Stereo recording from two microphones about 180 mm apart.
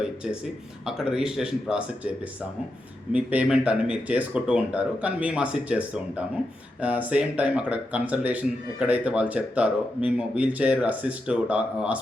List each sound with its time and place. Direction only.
0.9 s speech: 5° right (ahead or behind)